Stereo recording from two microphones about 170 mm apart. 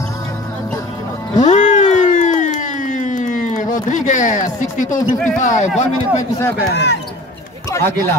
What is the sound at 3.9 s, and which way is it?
Speech, 45° left (ahead or behind).